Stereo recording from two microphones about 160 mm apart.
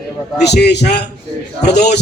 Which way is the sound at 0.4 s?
90° left.